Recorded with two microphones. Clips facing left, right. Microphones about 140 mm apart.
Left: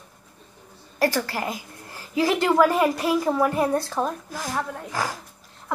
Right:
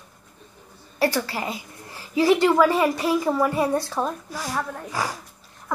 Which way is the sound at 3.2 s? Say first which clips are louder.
Even; 5° right (ahead or behind).